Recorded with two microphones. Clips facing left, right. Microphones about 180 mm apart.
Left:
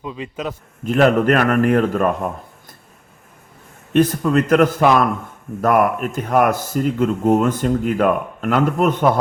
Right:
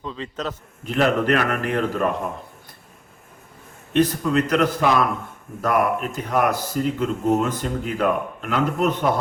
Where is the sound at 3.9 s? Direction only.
50° left (ahead or behind).